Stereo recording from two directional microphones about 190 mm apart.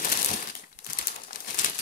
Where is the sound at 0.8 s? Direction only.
50° left (ahead or behind).